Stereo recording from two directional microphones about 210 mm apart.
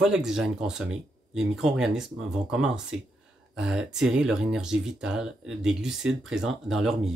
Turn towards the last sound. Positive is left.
turn(degrees=0)  # may be behind; listen again after turning